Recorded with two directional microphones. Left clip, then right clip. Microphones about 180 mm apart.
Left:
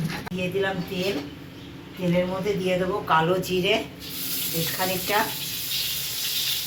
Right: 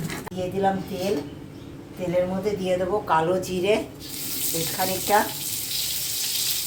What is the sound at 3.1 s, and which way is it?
Speech, 65° right (ahead or behind).